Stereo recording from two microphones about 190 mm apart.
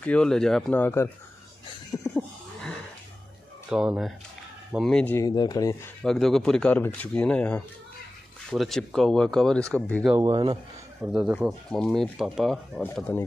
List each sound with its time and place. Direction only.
0.0 s speech: 5° left (ahead or behind)
2.1 s a sound: 5° left (ahead or behind)
3.7 s speech: 5° right (ahead or behind)
5.2 s speech: 20° left (ahead or behind)
6.0 s speech: centre (ahead or behind)
10.0 s speech: 15° right (ahead or behind)
11.1 s speech: 5° right (ahead or behind)